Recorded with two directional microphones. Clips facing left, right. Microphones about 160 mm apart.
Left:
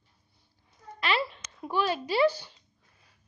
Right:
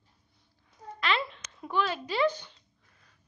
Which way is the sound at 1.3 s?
5° left (ahead or behind).